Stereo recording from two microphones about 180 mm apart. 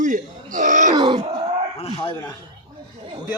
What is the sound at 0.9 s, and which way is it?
Speech, 25° right (ahead or behind).